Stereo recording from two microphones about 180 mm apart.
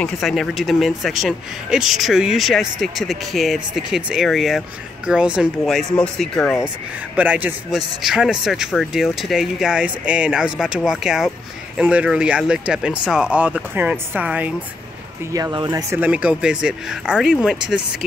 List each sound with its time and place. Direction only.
0.0 s speech: centre (ahead or behind)
7.2 s speech: 10° right (ahead or behind)
15.3 s speech: 20° right (ahead or behind); by 17.8 s 5° right (ahead or behind)